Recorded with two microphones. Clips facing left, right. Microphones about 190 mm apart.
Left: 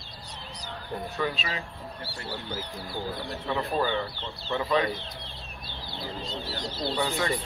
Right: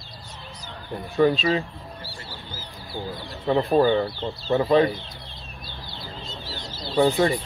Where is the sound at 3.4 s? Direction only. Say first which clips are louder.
Right 10 dB; 35° right (ahead or behind).